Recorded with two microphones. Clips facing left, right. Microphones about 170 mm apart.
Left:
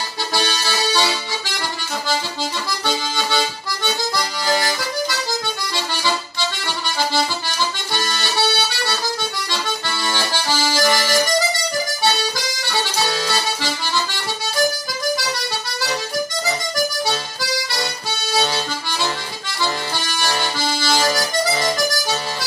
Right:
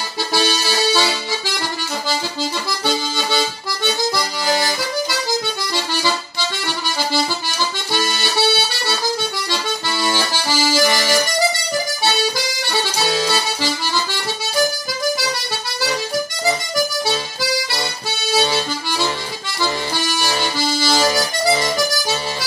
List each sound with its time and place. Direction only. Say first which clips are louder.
0.3 s music: right 4 dB; 5° right (ahead or behind)
8.1 s accordion: right 1 dB; 5° right (ahead or behind)
10.0 s accordion: right 1 dB; 10° right (ahead or behind)
12.6 s music: right 1 dB; 15° right (ahead or behind)
20.8 s music: right 2 dB; 10° right (ahead or behind)